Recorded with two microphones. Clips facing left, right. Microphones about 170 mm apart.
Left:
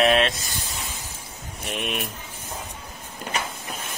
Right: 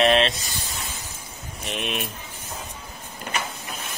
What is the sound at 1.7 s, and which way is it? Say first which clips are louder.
Speech: even; 5° left (ahead or behind).